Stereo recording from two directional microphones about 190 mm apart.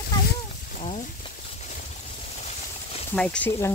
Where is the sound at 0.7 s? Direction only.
30° left (ahead or behind).